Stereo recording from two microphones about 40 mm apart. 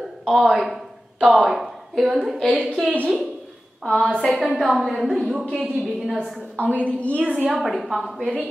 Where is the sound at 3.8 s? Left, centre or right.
Centre.